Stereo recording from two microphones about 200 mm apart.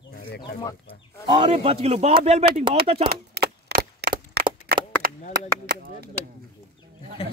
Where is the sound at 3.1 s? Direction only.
50° right (ahead or behind).